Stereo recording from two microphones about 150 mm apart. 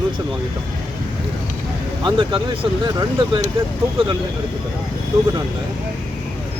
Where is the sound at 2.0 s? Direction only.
35° right (ahead or behind).